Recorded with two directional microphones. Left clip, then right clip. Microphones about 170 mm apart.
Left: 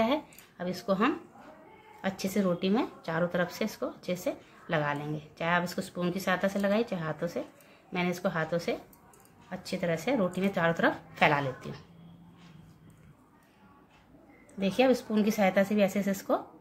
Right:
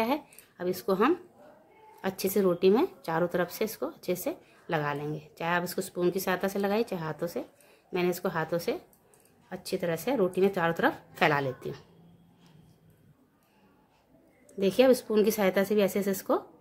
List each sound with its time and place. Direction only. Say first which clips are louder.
0.0 s a woman's voice: left 1 dB; 50° right (ahead or behind)
14.6 s a woman's voice: right 3 dB; 60° right (ahead or behind)